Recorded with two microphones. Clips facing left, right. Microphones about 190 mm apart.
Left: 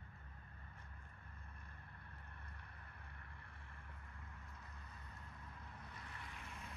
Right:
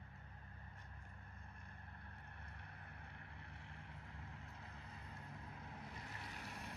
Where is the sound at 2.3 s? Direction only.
60° right (ahead or behind).